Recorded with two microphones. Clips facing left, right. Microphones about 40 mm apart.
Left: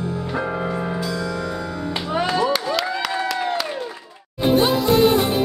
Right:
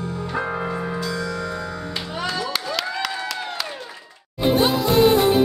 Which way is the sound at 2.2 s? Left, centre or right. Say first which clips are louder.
Left 7 dB; centre.